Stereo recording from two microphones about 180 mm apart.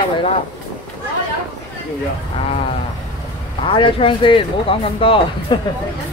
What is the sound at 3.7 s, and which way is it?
Speech, 30° left (ahead or behind).